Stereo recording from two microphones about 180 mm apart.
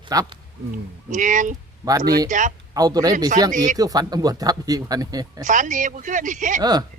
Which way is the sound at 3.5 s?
45° right (ahead or behind).